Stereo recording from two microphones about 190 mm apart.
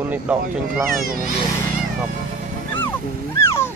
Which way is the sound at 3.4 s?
15° left (ahead or behind).